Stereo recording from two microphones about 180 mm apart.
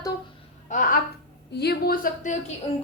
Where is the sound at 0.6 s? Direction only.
45° left (ahead or behind).